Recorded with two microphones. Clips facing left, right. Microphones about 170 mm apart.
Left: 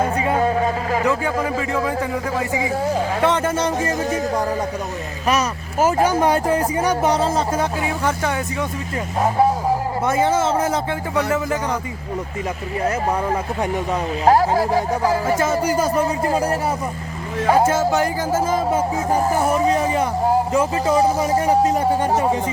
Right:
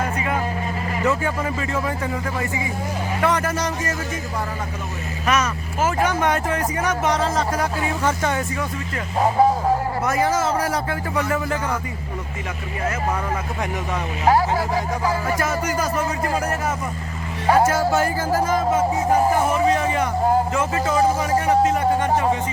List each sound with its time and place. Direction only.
0.0 s a sound: 30° left (ahead or behind)
0.6 s vehicle: 90° left
3.2 s music: 25° left (ahead or behind)
5.2 s speech: 35° left (ahead or behind)
7.8 s speech: 10° left (ahead or behind)
10.1 s music: 25° left (ahead or behind)
14.3 s speech: 40° left (ahead or behind)
17.5 s music: 20° left (ahead or behind)
19.5 s speech: 35° left (ahead or behind)